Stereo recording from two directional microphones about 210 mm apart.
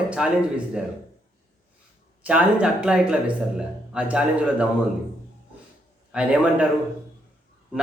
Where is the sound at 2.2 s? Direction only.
5° right (ahead or behind).